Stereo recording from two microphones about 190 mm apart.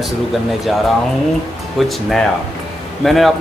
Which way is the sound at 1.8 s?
Centre (ahead or behind).